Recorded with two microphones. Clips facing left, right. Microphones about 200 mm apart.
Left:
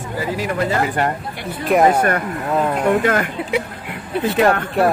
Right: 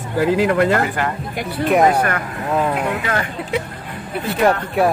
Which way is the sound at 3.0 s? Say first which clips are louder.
Left 5 dB; 45° left (ahead or behind).